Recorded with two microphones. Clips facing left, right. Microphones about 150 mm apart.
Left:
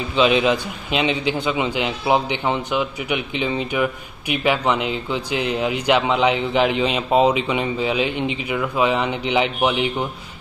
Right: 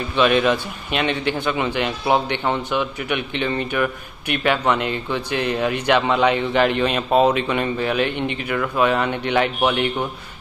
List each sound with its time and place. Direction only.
0.9 s a man's voice: 10° left (ahead or behind)